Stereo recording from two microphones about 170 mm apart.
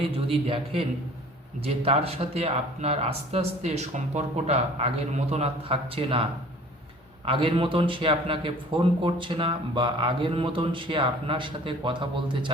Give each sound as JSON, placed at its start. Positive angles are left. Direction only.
{"t": 0.0, "sound": "a man's voice", "side_deg": -35}
{"t": 7.3, "sound": "a man's voice", "side_deg": -30}